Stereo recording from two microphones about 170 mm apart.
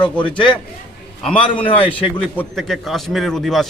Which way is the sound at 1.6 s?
35° left (ahead or behind).